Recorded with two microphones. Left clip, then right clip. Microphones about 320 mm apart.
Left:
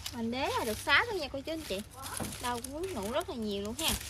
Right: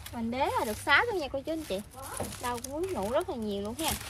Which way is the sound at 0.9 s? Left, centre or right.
Centre.